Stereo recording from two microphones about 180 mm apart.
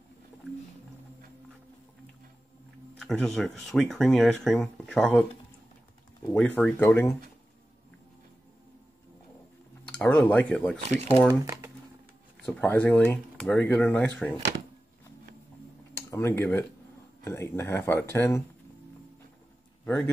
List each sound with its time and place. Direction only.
3.0 s speech: 5° left (ahead or behind)
6.3 s speech: 5° left (ahead or behind)
9.8 s speech: 5° left (ahead or behind)
10.8 s speech: 35° right (ahead or behind)
12.4 s speech: 10° left (ahead or behind)
16.1 s speech: 15° left (ahead or behind)
19.8 s a man's voice: 5° left (ahead or behind)